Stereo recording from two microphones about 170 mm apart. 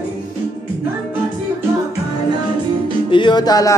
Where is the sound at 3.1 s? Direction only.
30° left (ahead or behind).